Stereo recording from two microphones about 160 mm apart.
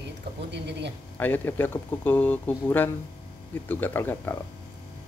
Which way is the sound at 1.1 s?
10° left (ahead or behind).